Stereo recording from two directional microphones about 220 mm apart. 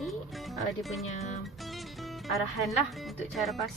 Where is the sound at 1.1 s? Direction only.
30° left (ahead or behind).